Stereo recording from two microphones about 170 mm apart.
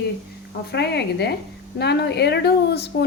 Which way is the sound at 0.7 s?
80° left.